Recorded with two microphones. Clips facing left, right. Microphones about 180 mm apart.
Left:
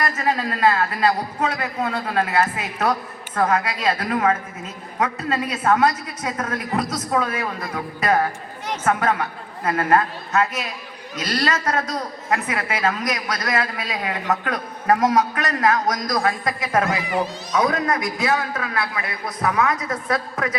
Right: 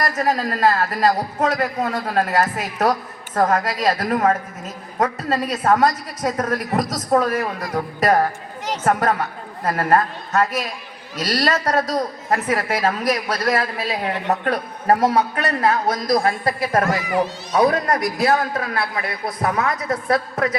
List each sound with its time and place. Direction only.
0.0 s a man's voice: 40° right (ahead or behind)